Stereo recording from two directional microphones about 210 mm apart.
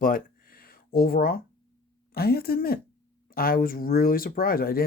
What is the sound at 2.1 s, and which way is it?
Speech, 45° left (ahead or behind).